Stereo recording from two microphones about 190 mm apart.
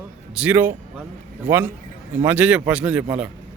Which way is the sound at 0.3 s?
10° right (ahead or behind).